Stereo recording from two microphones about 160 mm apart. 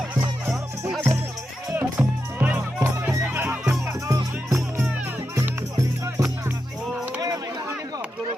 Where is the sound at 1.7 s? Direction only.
10° right (ahead or behind).